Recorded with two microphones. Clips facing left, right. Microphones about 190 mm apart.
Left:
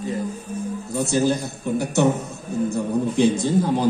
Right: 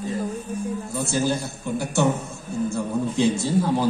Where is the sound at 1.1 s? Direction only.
20° left (ahead or behind).